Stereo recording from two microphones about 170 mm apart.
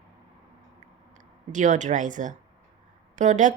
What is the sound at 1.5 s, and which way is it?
A woman's voice, 45° right (ahead or behind).